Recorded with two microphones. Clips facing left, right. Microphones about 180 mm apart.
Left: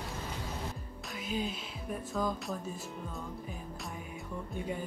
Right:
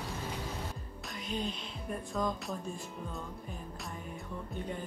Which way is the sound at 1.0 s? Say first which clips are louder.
Left 1 dB; 5° left (ahead or behind).